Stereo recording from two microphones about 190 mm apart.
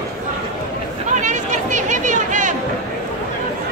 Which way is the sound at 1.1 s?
40° right (ahead or behind).